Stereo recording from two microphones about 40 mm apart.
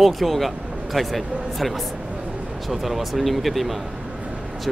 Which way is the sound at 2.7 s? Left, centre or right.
Centre.